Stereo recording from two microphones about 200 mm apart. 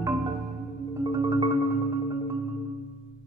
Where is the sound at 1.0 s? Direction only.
20° right (ahead or behind).